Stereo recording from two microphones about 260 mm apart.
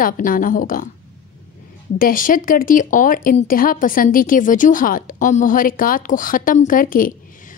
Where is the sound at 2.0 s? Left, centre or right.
Left.